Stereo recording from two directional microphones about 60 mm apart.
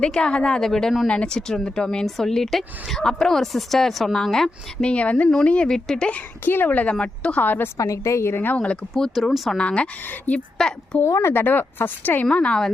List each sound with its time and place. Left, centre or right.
0.0 s speech: centre
4.9 s speech: left
6.4 s a woman's voice: left; by 7.4 s centre
7.4 s a woman's voice: left
7.8 s a woman's voice: left
8.4 s speech: left
9.1 s speech: centre
9.6 s speech: centre
10.1 s speech: left
11.0 s speech: left
11.3 s a woman's voice: left
12.3 s speech: centre